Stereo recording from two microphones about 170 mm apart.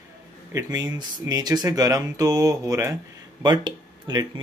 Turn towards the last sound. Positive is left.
turn(degrees=-25)  # may be behind; listen again after turning